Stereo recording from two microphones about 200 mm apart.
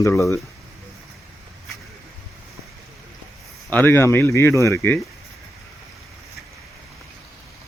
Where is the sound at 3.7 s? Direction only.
10° left (ahead or behind).